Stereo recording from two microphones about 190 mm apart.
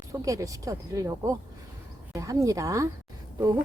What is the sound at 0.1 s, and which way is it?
Speech, 15° right (ahead or behind).